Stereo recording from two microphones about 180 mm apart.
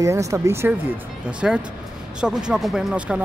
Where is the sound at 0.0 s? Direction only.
15° right (ahead or behind).